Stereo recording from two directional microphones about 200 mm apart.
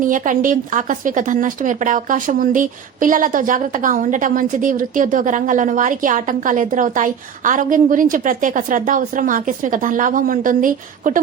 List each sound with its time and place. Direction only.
0.0 s a woman's voice: 40° right (ahead or behind)